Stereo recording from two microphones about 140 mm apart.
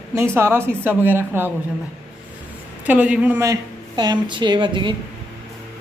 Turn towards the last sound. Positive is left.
turn(degrees=-35)  # may be behind; listen again after turning